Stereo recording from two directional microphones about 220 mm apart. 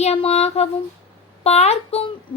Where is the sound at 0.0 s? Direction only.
25° left (ahead or behind).